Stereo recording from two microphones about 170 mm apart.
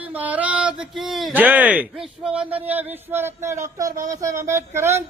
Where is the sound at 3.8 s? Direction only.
20° right (ahead or behind).